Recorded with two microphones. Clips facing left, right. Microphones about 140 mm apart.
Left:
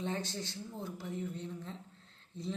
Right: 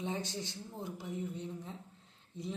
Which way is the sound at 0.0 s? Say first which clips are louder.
Even; 15° right (ahead or behind).